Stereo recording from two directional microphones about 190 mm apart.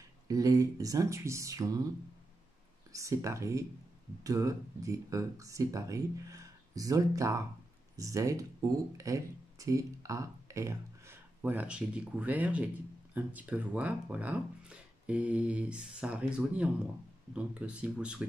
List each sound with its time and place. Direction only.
0.3 s speech: 20° right (ahead or behind)
2.9 s speech: 15° right (ahead or behind)